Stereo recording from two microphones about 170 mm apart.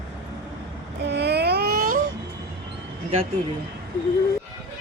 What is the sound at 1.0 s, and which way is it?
Baby cry, 80° right.